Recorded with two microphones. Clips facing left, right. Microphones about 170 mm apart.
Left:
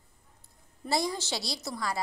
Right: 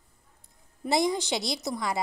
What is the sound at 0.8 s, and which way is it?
A woman's voice, 20° right (ahead or behind).